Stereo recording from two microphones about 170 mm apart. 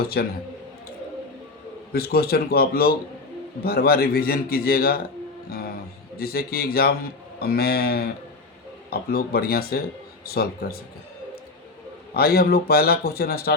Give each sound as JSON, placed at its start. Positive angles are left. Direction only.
{"t": 0.0, "sound": "a man's voice", "side_deg": 65}
{"t": 1.9, "sound": "a man's voice", "side_deg": 65}
{"t": 6.1, "sound": "a man's voice", "side_deg": 65}
{"t": 12.1, "sound": "a man's voice", "side_deg": 65}